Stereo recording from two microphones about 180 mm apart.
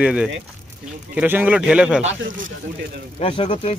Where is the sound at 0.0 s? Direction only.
5° right (ahead or behind).